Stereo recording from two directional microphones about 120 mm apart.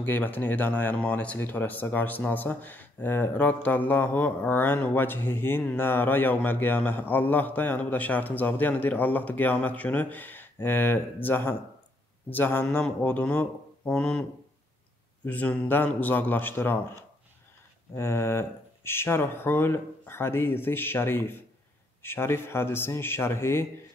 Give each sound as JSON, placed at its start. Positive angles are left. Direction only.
{"t": 0.0, "sound": "speech", "side_deg": 15}
{"t": 15.2, "sound": "speech", "side_deg": 15}
{"t": 17.9, "sound": "speech", "side_deg": 20}